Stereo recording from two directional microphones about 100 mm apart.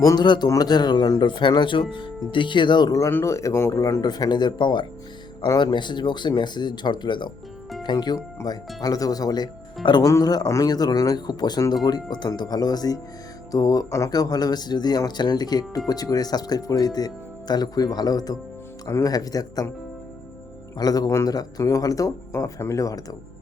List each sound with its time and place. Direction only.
0.0 s speech: 35° left (ahead or behind); by 2.9 s 50° left (ahead or behind)
3.1 s speech: 25° left (ahead or behind)
4.0 s speech: 45° left (ahead or behind)
5.4 s speech: 40° left (ahead or behind)
5.7 s speech: 50° left (ahead or behind)
20.7 s speech: 40° left (ahead or behind)
21.1 s speech: 30° left (ahead or behind)